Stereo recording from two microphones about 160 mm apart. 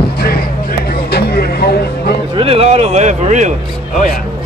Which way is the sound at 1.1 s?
85° left.